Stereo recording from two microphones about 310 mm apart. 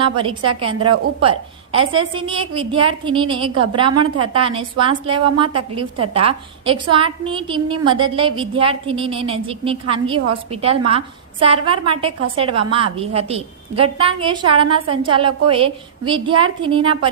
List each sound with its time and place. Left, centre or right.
0.0 s a woman's voice: centre